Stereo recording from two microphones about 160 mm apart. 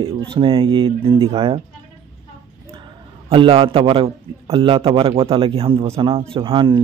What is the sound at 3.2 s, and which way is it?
A man's voice, 35° right (ahead or behind).